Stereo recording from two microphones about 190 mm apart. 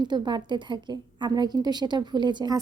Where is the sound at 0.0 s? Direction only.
25° right (ahead or behind).